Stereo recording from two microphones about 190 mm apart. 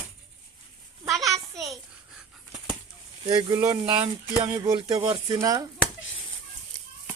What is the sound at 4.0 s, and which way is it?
Speech, 10° right (ahead or behind).